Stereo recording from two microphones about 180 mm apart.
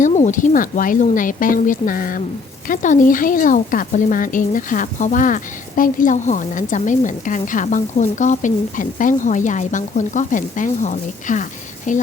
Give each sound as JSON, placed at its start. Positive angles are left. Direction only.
{"t": 0.0, "sound": "a woman's voice", "side_deg": 45}